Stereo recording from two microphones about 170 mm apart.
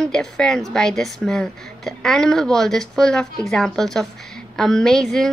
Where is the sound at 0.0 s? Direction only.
5° left (ahead or behind).